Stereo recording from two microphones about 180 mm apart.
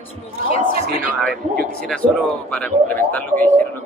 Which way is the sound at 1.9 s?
5° left (ahead or behind).